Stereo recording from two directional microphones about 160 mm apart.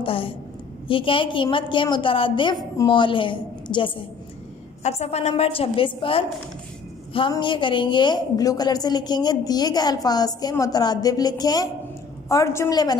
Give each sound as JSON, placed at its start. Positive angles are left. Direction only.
{"t": 0.0, "sound": "a woman's voice", "side_deg": 35}
{"t": 4.8, "sound": "a woman's voice", "side_deg": 40}